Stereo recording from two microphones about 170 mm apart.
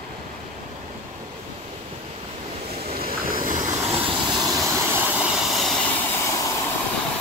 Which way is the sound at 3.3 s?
50° right (ahead or behind).